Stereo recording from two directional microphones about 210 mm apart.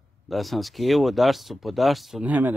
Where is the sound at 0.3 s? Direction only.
Centre (ahead or behind).